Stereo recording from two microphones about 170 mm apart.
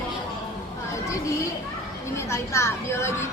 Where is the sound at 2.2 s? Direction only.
15° left (ahead or behind).